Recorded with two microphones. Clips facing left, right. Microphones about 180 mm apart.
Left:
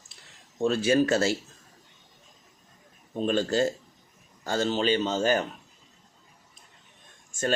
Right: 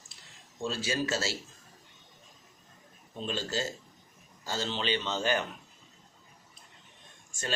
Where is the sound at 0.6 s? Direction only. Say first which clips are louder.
Left 10 dB; 60° left (ahead or behind).